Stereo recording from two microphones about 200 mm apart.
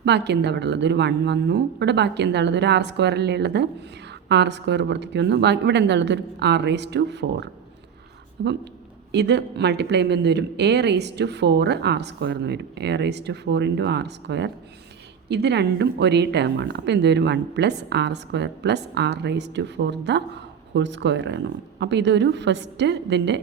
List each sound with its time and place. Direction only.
0.0 s speech: 60° right (ahead or behind)